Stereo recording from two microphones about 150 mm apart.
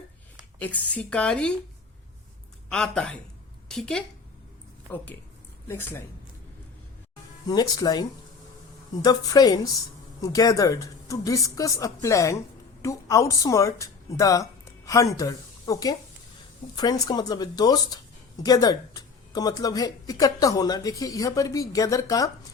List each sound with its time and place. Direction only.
0.6 s speech: 10° left (ahead or behind)
2.6 s a woman's voice: 5° left (ahead or behind)
5.6 s speech: 15° left (ahead or behind)
7.4 s speech: 25° left (ahead or behind)